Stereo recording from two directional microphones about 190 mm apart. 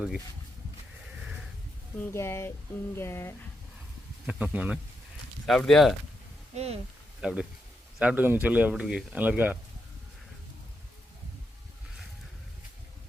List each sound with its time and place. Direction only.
2.0 s speech: 15° left (ahead or behind)
4.3 s speech: 5° right (ahead or behind)
6.5 s speech: 35° right (ahead or behind)
7.2 s speech: 5° right (ahead or behind)